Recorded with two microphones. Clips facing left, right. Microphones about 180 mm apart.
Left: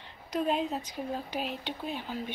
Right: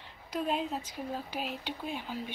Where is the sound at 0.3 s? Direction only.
5° right (ahead or behind).